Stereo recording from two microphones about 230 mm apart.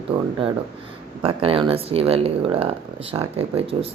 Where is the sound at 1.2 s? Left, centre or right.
Right.